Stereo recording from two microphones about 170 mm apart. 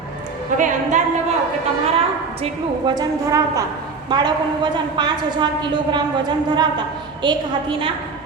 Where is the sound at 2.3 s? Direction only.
35° right (ahead or behind).